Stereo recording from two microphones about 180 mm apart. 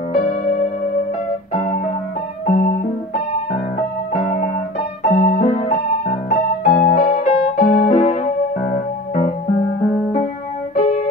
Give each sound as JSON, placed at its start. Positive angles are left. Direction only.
{"t": 0.1, "sound": "music", "side_deg": 40}
{"t": 2.5, "sound": "music", "side_deg": 50}
{"t": 4.1, "sound": "music", "side_deg": 45}
{"t": 6.2, "sound": "piano", "side_deg": 45}
{"t": 10.8, "sound": "music", "side_deg": 40}